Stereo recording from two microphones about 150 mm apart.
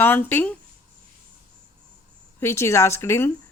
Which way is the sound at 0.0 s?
15° left (ahead or behind).